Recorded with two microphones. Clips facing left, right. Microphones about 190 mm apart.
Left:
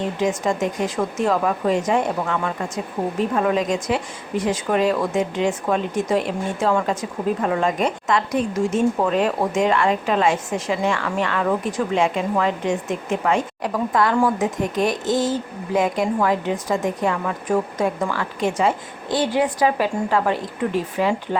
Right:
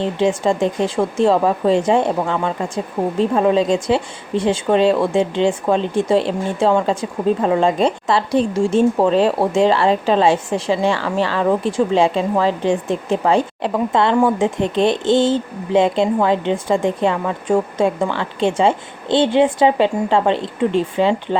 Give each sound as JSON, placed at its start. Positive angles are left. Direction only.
{"t": 0.0, "sound": "speech", "side_deg": -30}